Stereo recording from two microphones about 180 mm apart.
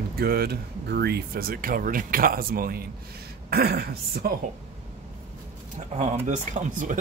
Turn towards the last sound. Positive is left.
turn(degrees=-45)  # may be behind; listen again after turning